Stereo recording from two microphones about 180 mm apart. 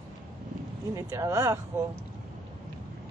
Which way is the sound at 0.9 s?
15° right (ahead or behind).